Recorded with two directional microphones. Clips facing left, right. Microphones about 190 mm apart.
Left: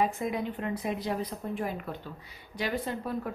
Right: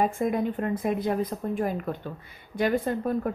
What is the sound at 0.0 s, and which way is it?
A woman's voice, 50° right (ahead or behind).